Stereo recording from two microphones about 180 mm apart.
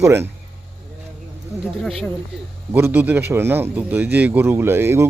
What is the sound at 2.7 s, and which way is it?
A man's voice, 10° right (ahead or behind).